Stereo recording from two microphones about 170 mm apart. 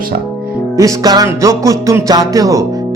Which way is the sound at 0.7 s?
20° right (ahead or behind).